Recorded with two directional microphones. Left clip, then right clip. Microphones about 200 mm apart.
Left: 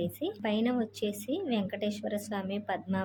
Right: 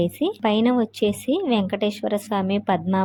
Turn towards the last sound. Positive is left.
turn(degrees=-25)  # may be behind; listen again after turning